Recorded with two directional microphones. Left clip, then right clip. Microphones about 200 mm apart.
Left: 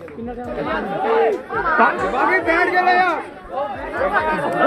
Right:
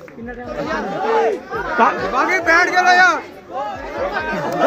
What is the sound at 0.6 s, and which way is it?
Speech, 45° right (ahead or behind).